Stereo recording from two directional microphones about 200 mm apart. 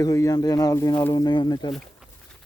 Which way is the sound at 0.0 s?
15° left (ahead or behind).